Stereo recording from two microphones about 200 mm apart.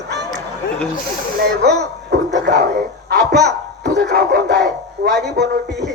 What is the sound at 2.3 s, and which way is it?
Speech, 55° right (ahead or behind).